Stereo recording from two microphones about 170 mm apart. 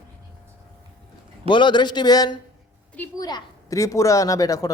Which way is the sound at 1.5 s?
25° left (ahead or behind).